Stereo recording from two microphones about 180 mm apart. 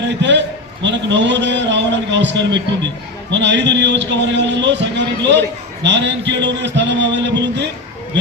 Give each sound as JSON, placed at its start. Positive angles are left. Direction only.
{"t": 0.0, "sound": "a man's voice", "side_deg": -75}